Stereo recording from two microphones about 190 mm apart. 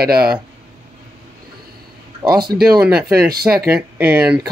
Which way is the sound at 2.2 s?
15° right (ahead or behind).